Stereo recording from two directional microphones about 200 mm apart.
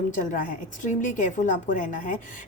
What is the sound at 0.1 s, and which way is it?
A woman's voice, 40° left (ahead or behind).